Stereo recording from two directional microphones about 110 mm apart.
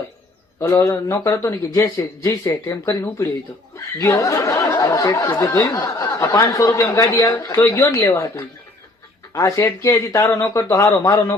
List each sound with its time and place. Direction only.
0.8 s speech: 30° left (ahead or behind)